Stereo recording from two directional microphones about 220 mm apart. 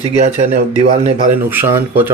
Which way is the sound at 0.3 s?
40° right (ahead or behind).